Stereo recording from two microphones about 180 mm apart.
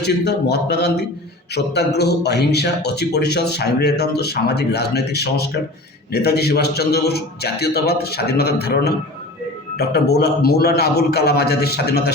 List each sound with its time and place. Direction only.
0.0 s a man's voice: 70° left (ahead or behind)